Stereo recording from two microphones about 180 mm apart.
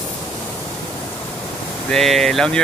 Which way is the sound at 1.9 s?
Centre (ahead or behind).